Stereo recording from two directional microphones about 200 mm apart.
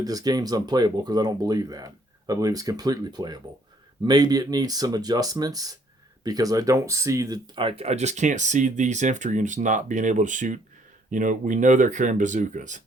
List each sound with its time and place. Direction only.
0.0 s speech: 20° right (ahead or behind); by 12.8 s 40° right (ahead or behind)